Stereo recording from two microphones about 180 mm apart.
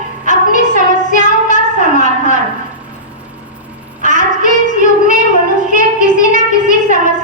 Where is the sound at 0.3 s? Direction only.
45° left (ahead or behind).